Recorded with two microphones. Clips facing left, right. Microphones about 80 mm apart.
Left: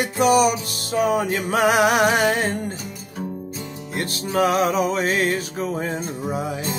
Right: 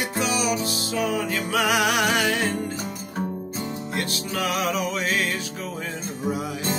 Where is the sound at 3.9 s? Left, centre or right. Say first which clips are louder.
Left 7 dB; left.